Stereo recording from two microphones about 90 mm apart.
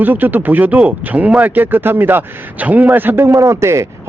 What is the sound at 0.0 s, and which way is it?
Speech, 20° right (ahead or behind).